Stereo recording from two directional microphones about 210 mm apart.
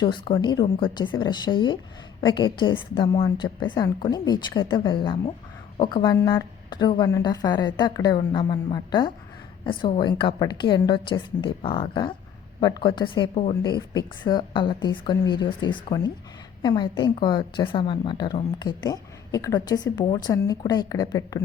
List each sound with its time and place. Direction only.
0.0 s a woman's voice: 20° left (ahead or behind)